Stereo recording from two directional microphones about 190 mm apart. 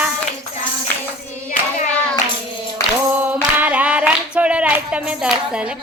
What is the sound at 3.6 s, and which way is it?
Music, 5° right (ahead or behind).